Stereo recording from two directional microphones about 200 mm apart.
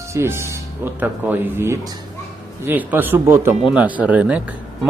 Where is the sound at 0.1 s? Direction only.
15° right (ahead or behind).